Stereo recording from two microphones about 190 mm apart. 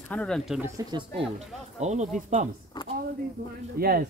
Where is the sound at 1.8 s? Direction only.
35° right (ahead or behind).